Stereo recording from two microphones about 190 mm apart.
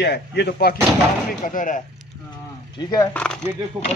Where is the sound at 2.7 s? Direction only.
20° left (ahead or behind).